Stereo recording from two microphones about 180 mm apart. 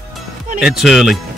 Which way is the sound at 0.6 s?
Centre (ahead or behind).